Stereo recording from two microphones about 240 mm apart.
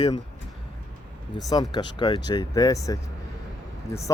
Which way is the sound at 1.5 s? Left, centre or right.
Centre.